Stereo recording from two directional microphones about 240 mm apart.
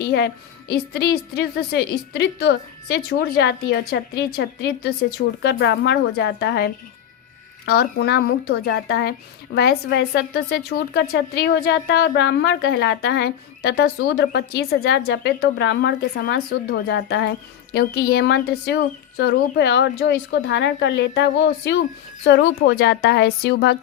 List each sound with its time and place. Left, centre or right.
0.7 s a woman's voice: left